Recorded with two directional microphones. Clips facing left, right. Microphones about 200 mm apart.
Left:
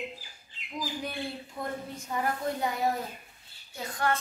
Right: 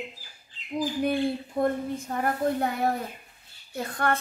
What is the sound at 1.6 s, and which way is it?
A woman's voice, 55° right (ahead or behind).